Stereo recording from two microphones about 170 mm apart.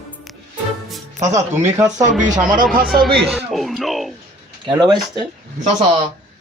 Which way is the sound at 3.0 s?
Centre (ahead or behind).